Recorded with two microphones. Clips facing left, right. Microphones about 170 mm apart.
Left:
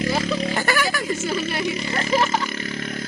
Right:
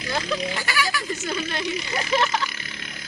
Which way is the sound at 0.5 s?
50° left (ahead or behind).